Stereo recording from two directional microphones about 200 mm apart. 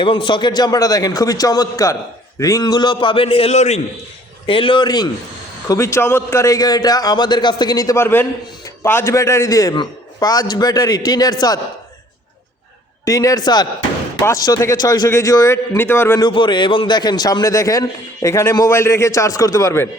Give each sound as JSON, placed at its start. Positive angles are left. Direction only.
{"t": 0.0, "sound": "a man's voice", "side_deg": 25}
{"t": 13.1, "sound": "a man's voice", "side_deg": 15}